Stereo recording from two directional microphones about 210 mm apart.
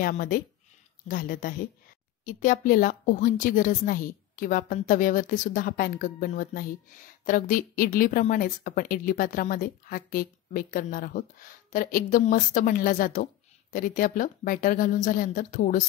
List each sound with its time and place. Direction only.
0.0 s a woman's voice: 45° left (ahead or behind)